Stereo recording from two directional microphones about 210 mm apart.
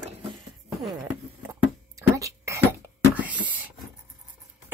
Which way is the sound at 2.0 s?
15° right (ahead or behind).